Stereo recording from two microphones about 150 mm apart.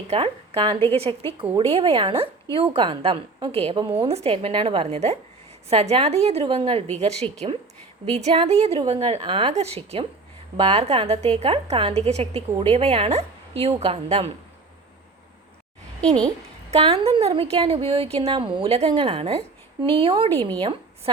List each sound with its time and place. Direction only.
0.1 s a woman's voice: 35° right (ahead or behind)
16.0 s a child's voice: 5° left (ahead or behind)
16.7 s a woman's voice: 40° right (ahead or behind)